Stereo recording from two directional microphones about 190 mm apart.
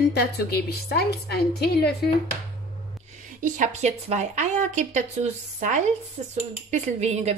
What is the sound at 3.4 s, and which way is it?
Speech, 40° right (ahead or behind).